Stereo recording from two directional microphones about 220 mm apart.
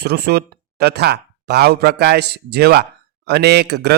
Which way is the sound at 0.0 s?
45° right (ahead or behind).